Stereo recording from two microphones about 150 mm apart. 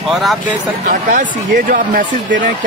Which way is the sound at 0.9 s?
60° right (ahead or behind).